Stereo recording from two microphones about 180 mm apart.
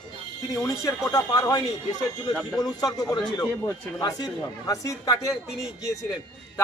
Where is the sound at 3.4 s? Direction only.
20° left (ahead or behind).